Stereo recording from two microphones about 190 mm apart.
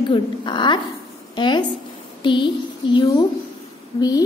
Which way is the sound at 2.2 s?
25° left (ahead or behind).